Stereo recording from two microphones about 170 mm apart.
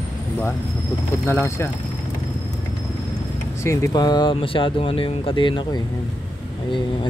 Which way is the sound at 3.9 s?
25° left (ahead or behind).